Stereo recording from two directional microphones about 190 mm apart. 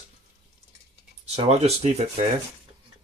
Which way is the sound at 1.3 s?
35° right (ahead or behind).